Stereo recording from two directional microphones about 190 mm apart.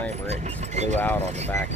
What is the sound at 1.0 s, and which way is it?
Speech, 10° left (ahead or behind).